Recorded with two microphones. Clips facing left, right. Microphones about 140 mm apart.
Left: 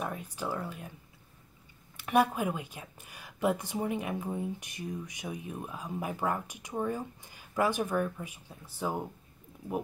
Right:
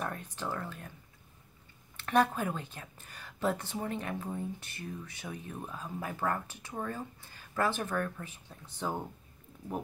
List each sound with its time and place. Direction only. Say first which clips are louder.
0.0 s speech: left 2 dB; 10° left (ahead or behind)
2.0 s a woman's voice: left 1 dB; 10° left (ahead or behind)